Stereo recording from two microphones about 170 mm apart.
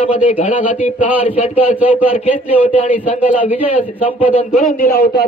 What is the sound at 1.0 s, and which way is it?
A man's voice, 10° right (ahead or behind).